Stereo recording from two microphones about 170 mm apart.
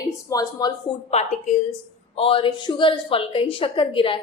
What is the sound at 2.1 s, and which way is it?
A woman's voice, 30° left (ahead or behind).